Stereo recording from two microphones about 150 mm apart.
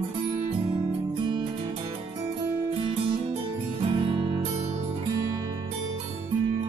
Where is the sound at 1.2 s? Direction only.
30° right (ahead or behind).